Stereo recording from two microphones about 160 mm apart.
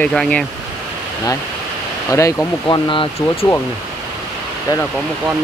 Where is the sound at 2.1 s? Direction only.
20° left (ahead or behind); by 3.5 s 35° left (ahead or behind).